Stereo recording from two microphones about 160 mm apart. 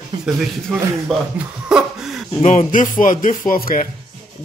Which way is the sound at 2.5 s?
55° left (ahead or behind).